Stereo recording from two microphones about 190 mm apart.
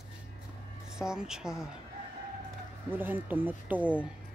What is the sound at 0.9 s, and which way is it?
Speech, 5° right (ahead or behind).